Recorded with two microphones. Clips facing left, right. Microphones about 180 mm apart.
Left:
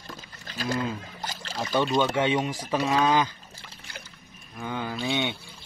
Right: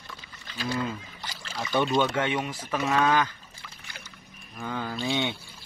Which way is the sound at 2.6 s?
35° left (ahead or behind).